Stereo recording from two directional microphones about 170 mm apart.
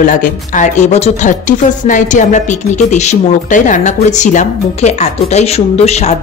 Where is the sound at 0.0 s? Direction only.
55° left (ahead or behind).